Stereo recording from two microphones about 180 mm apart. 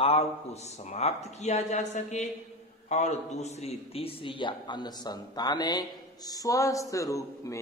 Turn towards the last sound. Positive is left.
turn(degrees=15)  # may be behind; listen again after turning